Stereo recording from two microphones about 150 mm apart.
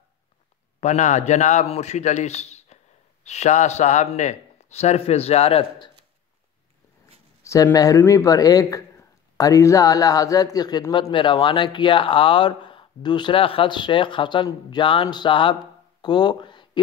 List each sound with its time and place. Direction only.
0.7 s speech: 50° left (ahead or behind)
7.4 s a man's voice: 25° left (ahead or behind)
16.0 s a sound: 30° left (ahead or behind)